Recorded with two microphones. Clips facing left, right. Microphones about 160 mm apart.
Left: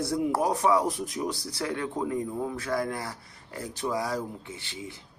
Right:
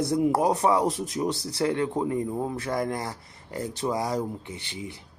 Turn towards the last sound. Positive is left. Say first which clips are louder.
# right 3 dB
turn(degrees=-20)  # may be behind; listen again after turning